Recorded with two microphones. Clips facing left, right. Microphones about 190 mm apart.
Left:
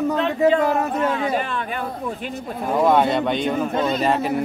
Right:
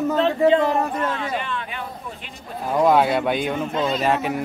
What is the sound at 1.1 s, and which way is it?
A man's voice, 40° left (ahead or behind).